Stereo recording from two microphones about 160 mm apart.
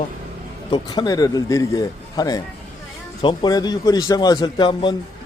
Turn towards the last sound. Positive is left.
turn(degrees=30)  # may be behind; listen again after turning